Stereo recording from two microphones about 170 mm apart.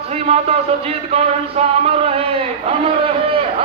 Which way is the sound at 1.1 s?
35° right (ahead or behind).